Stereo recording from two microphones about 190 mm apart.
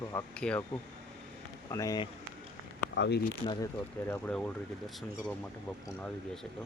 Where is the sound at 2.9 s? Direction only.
70° left (ahead or behind).